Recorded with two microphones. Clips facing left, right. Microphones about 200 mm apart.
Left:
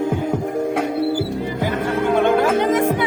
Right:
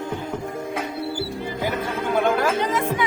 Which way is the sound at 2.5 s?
50° left (ahead or behind).